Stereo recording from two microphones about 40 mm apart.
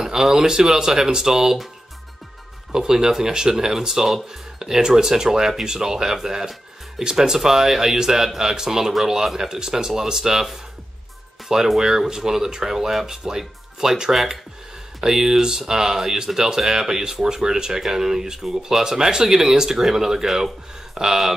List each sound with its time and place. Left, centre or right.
0.0 s speech: centre
2.7 s speech: centre